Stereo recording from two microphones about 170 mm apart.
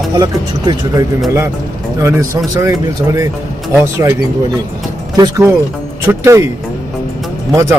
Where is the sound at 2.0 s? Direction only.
15° right (ahead or behind).